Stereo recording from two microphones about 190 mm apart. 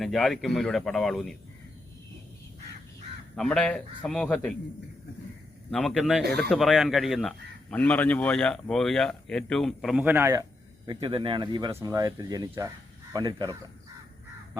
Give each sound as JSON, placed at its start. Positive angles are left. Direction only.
{"t": 0.0, "sound": "speech", "side_deg": 0}
{"t": 3.3, "sound": "speech", "side_deg": 5}
{"t": 5.7, "sound": "speech", "side_deg": 5}
{"t": 10.8, "sound": "speech", "side_deg": -25}